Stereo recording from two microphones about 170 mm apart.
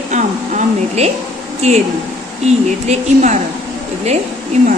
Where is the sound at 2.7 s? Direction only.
45° right (ahead or behind).